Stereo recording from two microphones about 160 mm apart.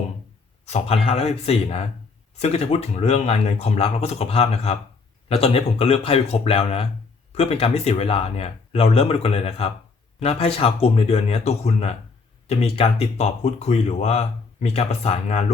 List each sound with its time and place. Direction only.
0.6 s speech: 40° left (ahead or behind)